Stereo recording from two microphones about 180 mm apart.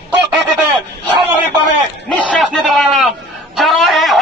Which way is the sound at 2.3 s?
Centre (ahead or behind).